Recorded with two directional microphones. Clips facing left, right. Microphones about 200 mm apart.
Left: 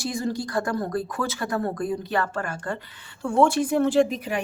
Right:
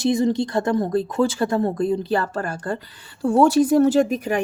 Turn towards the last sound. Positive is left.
turn(degrees=-50)  # may be behind; listen again after turning